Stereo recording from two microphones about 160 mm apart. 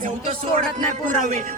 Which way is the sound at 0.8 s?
55° right (ahead or behind).